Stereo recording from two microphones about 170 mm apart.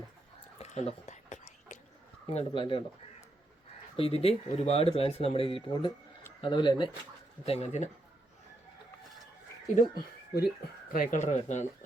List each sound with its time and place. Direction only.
0.6 s a sound: 40° left (ahead or behind)
2.3 s speech: 30° left (ahead or behind)
9.7 s speech: 65° left (ahead or behind)
10.9 s speech: 55° left (ahead or behind)